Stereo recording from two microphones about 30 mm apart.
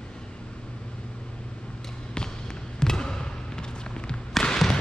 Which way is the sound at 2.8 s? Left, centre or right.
Left.